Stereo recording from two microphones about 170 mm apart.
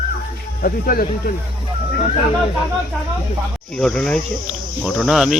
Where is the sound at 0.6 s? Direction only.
55° left (ahead or behind).